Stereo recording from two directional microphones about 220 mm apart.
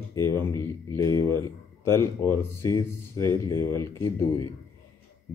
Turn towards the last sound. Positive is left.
turn(degrees=15)  # may be behind; listen again after turning